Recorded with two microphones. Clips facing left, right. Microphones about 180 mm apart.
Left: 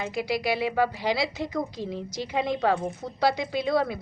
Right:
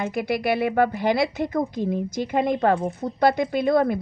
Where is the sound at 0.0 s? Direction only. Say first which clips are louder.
Right 4 dB; 55° right (ahead or behind).